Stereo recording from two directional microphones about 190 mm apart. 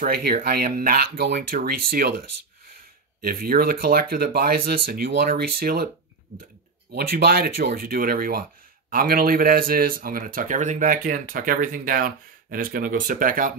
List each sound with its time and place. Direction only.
0.0 s speech: 50° right (ahead or behind)
6.9 s speech: 60° right (ahead or behind)